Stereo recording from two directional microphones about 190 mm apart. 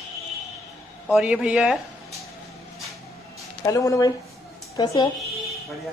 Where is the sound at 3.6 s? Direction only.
15° left (ahead or behind).